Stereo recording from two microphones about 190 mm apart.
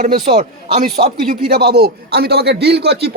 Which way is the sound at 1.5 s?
55° right (ahead or behind).